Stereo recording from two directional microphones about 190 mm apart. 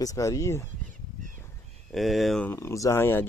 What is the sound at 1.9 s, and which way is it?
Speech, centre (ahead or behind).